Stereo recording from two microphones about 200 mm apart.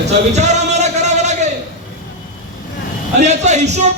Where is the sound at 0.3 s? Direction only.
35° right (ahead or behind).